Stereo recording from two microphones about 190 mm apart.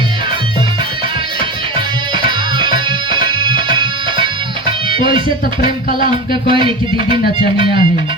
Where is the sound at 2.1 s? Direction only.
25° right (ahead or behind).